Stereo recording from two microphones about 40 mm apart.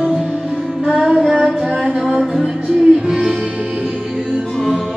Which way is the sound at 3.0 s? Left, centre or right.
Centre.